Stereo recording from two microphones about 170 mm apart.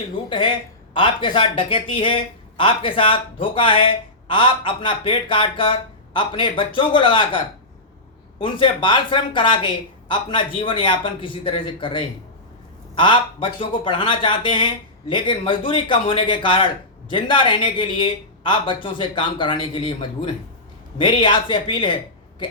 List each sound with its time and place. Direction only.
0.3 s speech: 30° left (ahead or behind)